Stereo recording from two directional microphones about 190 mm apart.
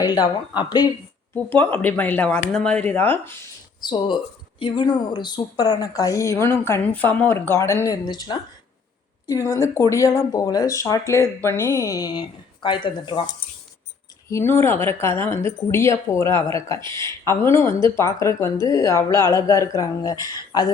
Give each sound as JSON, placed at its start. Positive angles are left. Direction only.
{"t": 0.0, "sound": "speech", "side_deg": 20}
{"t": 1.5, "sound": "speech", "side_deg": 10}
{"t": 3.8, "sound": "speech", "side_deg": 25}
{"t": 14.3, "sound": "speech", "side_deg": 15}